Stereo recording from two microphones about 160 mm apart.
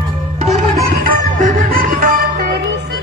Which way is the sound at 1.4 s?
55° right (ahead or behind).